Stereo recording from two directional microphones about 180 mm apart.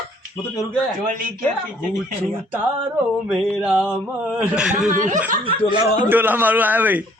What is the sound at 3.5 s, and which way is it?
Music, 5° right (ahead or behind).